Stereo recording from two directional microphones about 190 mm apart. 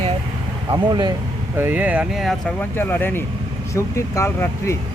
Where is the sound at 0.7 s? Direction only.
20° right (ahead or behind).